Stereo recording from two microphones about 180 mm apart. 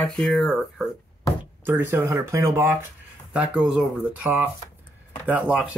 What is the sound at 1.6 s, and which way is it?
Speech, 10° right (ahead or behind).